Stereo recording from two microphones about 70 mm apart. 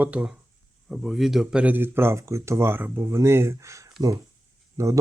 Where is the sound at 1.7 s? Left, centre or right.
Right.